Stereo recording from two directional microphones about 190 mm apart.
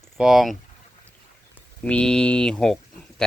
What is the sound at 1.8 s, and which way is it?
Speech, 5° left (ahead or behind).